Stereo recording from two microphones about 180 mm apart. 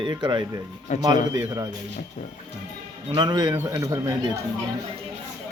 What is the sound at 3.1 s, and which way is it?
Speech, 25° right (ahead or behind).